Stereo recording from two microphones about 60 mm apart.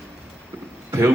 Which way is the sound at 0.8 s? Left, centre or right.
Right.